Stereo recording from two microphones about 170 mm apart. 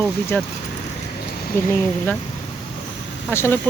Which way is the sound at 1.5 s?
15° left (ahead or behind).